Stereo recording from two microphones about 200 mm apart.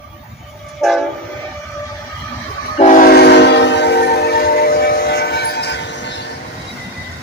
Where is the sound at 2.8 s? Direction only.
40° left (ahead or behind).